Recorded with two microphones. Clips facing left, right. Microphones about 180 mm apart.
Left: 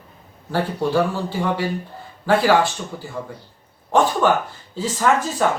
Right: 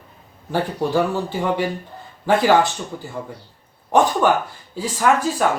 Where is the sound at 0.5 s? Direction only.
20° right (ahead or behind).